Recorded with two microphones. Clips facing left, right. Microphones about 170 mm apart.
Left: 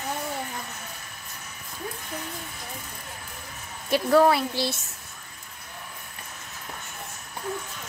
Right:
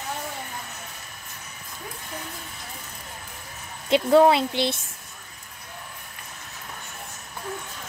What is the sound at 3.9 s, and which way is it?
Speech, 20° right (ahead or behind).